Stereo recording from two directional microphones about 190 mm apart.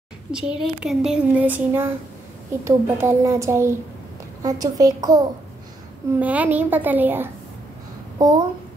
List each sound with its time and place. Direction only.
0.3 s a woman's voice: 5° right (ahead or behind); by 5.2 s 20° right (ahead or behind)
6.1 s speech: 10° right (ahead or behind)
8.2 s a woman's voice: 20° right (ahead or behind)